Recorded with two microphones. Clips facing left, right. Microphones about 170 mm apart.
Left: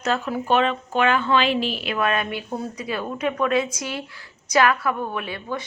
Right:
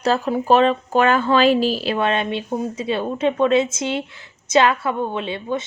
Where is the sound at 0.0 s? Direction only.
30° right (ahead or behind).